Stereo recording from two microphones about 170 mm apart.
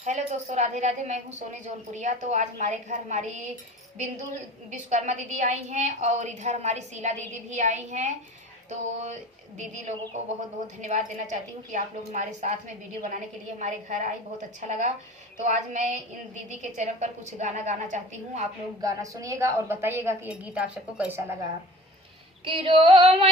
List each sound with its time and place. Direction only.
0.0 s a woman's voice: 45° right (ahead or behind)
4.7 s a woman's voice: 45° right (ahead or behind)
8.7 s female singing: 40° right (ahead or behind)
10.8 s a woman's voice: 45° right (ahead or behind)
18.8 s a woman's voice: 20° right (ahead or behind)
22.4 s female singing: 30° right (ahead or behind)